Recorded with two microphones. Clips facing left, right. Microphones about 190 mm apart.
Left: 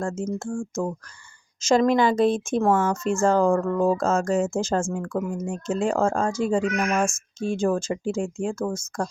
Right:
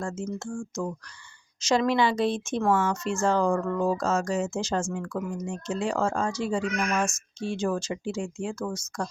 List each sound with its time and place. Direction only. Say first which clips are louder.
0.0 s speech: left 4 dB; 50° left (ahead or behind)